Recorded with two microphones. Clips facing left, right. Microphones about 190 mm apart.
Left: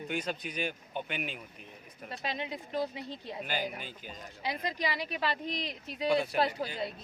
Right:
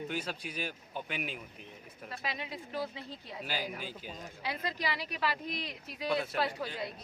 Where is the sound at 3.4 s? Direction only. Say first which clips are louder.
Left 1 dB; 5° right (ahead or behind).